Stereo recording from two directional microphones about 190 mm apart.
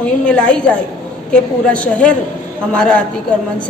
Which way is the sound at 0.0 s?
5° left (ahead or behind).